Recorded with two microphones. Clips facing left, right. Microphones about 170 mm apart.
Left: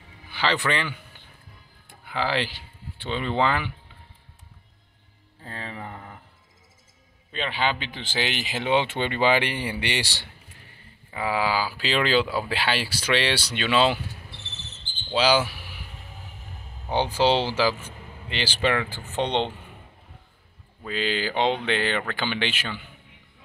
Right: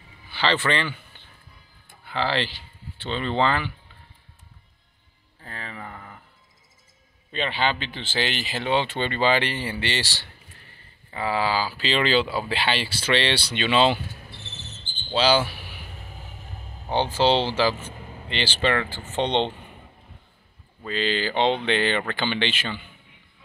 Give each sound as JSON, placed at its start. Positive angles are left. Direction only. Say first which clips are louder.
{"t": 0.3, "sound": "speech", "louder": "right 1 dB", "side_deg": 10}
{"t": 5.4, "sound": "speech", "louder": "left 1 dB", "side_deg": 25}
{"t": 7.3, "sound": "speech", "louder": "right 1 dB", "side_deg": 5}
{"t": 15.0, "sound": "speech", "louder": "even", "side_deg": 10}
{"t": 16.9, "sound": "speech", "louder": "right 1 dB", "side_deg": 10}
{"t": 20.8, "sound": "speech", "louder": "right 1 dB", "side_deg": 10}